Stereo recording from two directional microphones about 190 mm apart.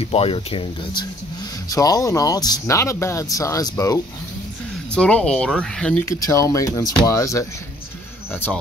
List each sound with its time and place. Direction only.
0.0 s speech: 30° left (ahead or behind)
4.9 s speech: 5° left (ahead or behind)
6.0 s speech: 15° left (ahead or behind)